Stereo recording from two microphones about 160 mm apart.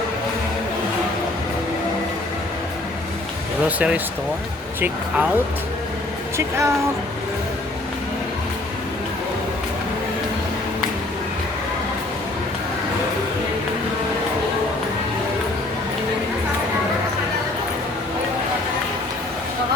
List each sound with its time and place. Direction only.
3.8 s speech: 10° right (ahead or behind)
6.3 s speech: 15° right (ahead or behind)